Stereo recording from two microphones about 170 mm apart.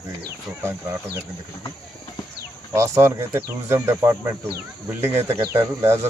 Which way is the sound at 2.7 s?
15° right (ahead or behind).